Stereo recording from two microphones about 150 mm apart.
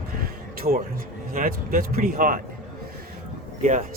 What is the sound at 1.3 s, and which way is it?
Speech, 70° right (ahead or behind).